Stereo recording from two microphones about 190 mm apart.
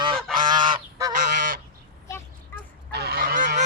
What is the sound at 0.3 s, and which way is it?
Goose, 25° right (ahead or behind).